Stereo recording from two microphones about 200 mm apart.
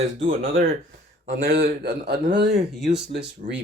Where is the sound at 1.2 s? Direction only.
40° right (ahead or behind).